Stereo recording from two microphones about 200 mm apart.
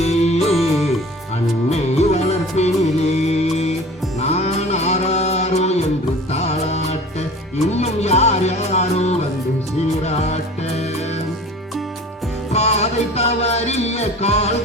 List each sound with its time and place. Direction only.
0.0 s music: 35° left (ahead or behind)
0.5 s music: centre (ahead or behind)
1.7 s music: 35° left (ahead or behind)
12.5 s music: 35° left (ahead or behind)